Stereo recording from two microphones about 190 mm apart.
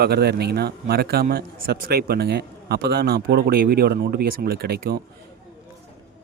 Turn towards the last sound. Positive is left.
turn(degrees=-55)  # may be behind; listen again after turning